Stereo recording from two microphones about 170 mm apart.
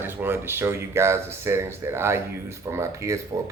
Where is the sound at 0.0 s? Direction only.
15° right (ahead or behind).